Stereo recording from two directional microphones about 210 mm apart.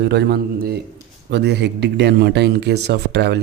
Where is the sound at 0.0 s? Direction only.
55° right (ahead or behind).